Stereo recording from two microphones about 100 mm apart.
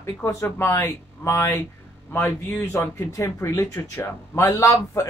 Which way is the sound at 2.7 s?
25° left (ahead or behind).